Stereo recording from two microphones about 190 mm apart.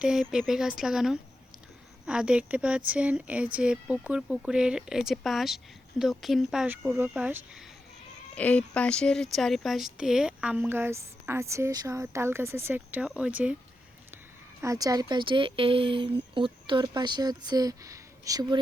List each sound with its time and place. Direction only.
0.0 s speech: centre (ahead or behind)
8.4 s a woman's voice: 5° left (ahead or behind)
14.6 s speech: 20° right (ahead or behind)